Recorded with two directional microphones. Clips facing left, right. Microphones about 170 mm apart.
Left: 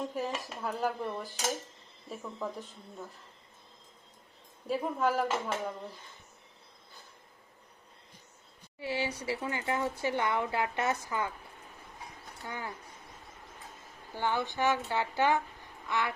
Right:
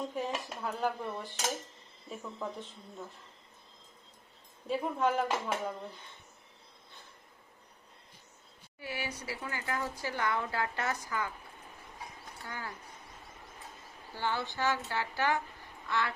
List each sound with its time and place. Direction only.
0.0 s speech: centre (ahead or behind)
4.6 s speech: centre (ahead or behind)
8.8 s speech: 25° left (ahead or behind)
12.5 s speech: 20° left (ahead or behind)
14.2 s speech: 15° left (ahead or behind)